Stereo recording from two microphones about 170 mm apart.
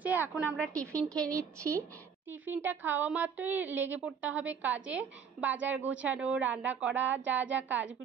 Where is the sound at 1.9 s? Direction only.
10° right (ahead or behind).